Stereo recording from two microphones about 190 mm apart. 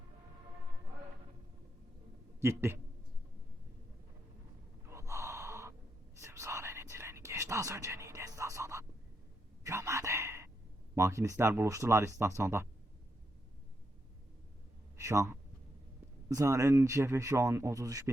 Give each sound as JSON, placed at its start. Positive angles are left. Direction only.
{"t": 2.4, "sound": "speech", "side_deg": -15}
{"t": 4.9, "sound": "gasp", "side_deg": -15}
{"t": 6.2, "sound": "whispering", "side_deg": -15}
{"t": 10.9, "sound": "speech", "side_deg": -15}
{"t": 14.9, "sound": "a sound", "side_deg": -15}
{"t": 16.3, "sound": "speech", "side_deg": -15}